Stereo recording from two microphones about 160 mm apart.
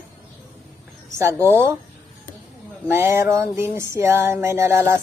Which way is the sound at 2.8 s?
15° right (ahead or behind).